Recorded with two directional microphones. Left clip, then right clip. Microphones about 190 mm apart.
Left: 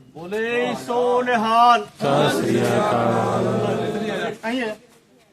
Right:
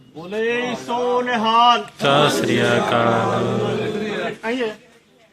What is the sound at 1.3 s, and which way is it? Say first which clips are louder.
Music: right 1 dB; centre (ahead or behind).